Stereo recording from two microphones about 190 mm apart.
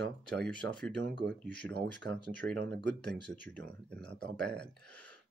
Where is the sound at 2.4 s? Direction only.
70° right (ahead or behind).